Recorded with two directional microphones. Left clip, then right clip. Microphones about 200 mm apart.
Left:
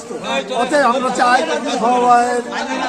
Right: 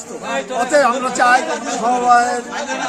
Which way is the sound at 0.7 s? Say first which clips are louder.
Right 1 dB; 15° right (ahead or behind).